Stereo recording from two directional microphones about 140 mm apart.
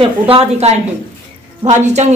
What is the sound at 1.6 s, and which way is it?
Speech, 55° right (ahead or behind).